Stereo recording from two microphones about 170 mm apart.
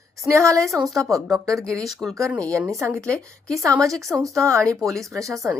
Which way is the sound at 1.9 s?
Centre (ahead or behind).